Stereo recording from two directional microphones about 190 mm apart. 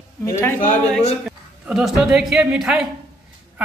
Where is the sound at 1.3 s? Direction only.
Centre (ahead or behind).